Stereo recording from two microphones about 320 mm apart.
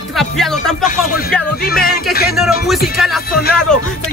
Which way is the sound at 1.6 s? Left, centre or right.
Left.